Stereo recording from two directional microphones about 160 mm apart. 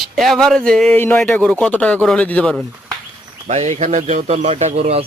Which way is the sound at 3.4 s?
45° right (ahead or behind).